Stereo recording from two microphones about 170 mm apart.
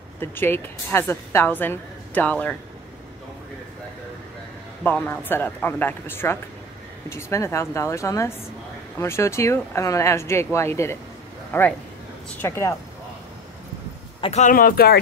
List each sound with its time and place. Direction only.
0.2 s a woman's voice: 10° left (ahead or behind)
4.8 s a woman's voice: 10° left (ahead or behind)
14.2 s speech: 45° left (ahead or behind); by 15.0 s 60° left (ahead or behind)